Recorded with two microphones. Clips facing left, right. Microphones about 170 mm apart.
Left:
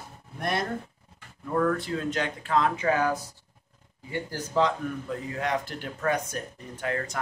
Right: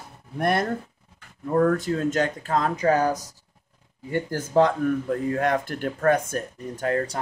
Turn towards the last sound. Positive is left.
turn(degrees=-35)  # may be behind; listen again after turning